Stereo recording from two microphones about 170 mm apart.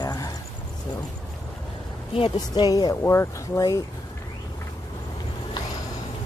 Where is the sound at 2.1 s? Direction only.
30° left (ahead or behind).